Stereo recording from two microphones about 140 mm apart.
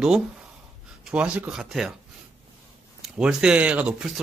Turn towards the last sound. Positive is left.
turn(degrees=-10)  # may be behind; listen again after turning